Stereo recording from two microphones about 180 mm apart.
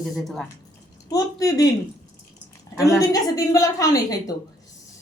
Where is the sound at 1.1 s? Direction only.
20° left (ahead or behind).